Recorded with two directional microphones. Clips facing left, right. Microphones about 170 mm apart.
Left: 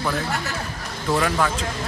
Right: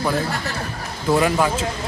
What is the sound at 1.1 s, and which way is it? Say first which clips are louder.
Speech: right 4 dB; 15° right (ahead or behind).